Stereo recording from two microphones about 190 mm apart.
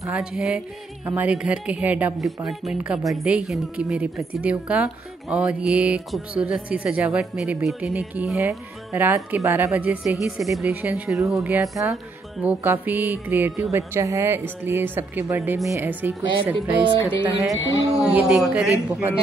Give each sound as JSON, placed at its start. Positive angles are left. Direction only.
{"t": 0.0, "sound": "a woman's voice", "side_deg": -5}
{"t": 17.6, "sound": "a man's voice", "side_deg": 80}
{"t": 17.9, "sound": "a woman's voice", "side_deg": -5}